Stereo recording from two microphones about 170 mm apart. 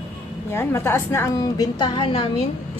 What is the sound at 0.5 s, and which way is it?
A woman's voice, 15° left (ahead or behind).